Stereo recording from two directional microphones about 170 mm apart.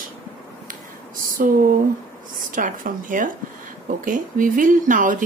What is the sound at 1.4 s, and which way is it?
A woman's voice, 55° right (ahead or behind).